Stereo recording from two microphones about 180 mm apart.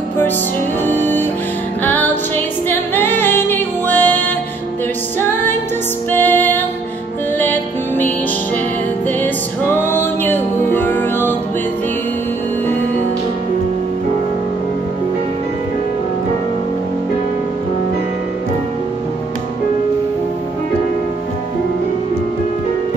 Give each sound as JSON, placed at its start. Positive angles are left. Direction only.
{"t": 0.8, "sound": "music", "side_deg": 10}
{"t": 5.3, "sound": "music", "side_deg": 10}
{"t": 9.8, "sound": "music", "side_deg": 10}